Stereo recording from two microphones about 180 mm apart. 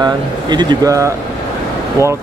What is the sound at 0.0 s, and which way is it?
Speech, 25° right (ahead or behind).